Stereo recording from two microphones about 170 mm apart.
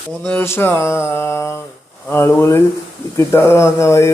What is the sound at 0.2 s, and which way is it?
Mantra, 10° left (ahead or behind).